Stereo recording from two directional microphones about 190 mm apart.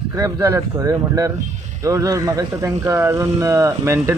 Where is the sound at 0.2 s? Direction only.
15° right (ahead or behind).